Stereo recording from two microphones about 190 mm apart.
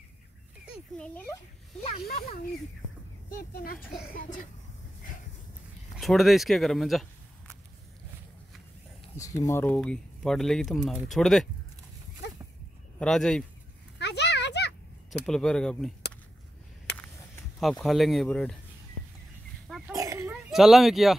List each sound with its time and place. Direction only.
0.9 s speech: 5° left (ahead or behind)
1.8 s speech: 30° left (ahead or behind)
2.0 s speech: 50° left (ahead or behind)
5.9 s speech: centre (ahead or behind)
9.1 s speech: 15° left (ahead or behind)
13.0 s speech: 5° left (ahead or behind)
13.9 s a sound: 65° left (ahead or behind)
15.2 s speech: 5° left (ahead or behind)
17.6 s speech: centre (ahead or behind)
19.9 s a sound: 15° right (ahead or behind)
20.5 s speech: centre (ahead or behind)